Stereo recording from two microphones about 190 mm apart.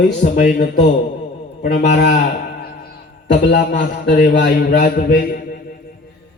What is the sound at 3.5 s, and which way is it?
Speech, 45° left (ahead or behind).